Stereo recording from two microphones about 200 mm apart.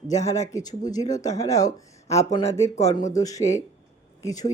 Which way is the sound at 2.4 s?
30° left (ahead or behind).